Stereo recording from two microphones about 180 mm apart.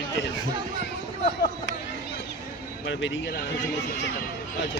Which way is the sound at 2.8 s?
80° left.